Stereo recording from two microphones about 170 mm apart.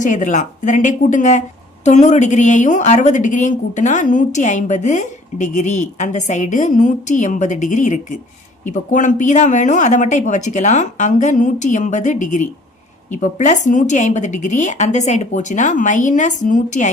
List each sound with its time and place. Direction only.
0.0 s a woman's voice: 50° left (ahead or behind)